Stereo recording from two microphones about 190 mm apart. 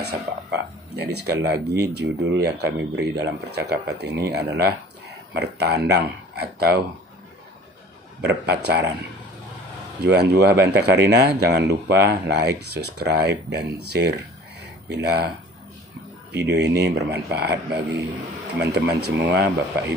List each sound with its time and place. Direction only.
0.0 s speech: 60° right (ahead or behind)
8.2 s speech: 60° right (ahead or behind)
10.0 s speech: 60° right (ahead or behind)
18.6 s speech: 65° right (ahead or behind)